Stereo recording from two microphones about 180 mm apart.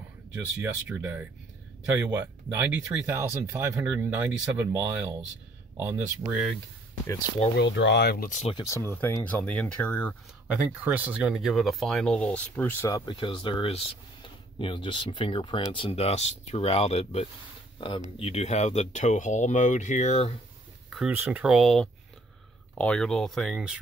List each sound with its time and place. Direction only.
0.6 s speech: 10° right (ahead or behind)
5.8 s speech: 10° right (ahead or behind)
7.5 s speech: 75° left (ahead or behind)
8.3 s speech: 40° left (ahead or behind)
8.5 s speech: 15° left (ahead or behind)
10.8 s speech: 10° right (ahead or behind); by 20.3 s 40° left (ahead or behind)
21.1 s speech: 10° right (ahead or behind)